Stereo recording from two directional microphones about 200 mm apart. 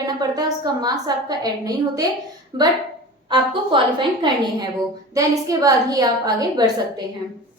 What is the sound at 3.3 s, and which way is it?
A woman's voice, 25° right (ahead or behind).